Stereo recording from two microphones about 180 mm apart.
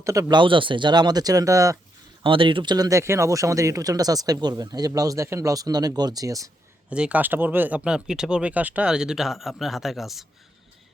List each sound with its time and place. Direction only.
0.0 s speech: 20° right (ahead or behind)
2.2 s speech: 30° right (ahead or behind)
6.9 s speech: 5° right (ahead or behind)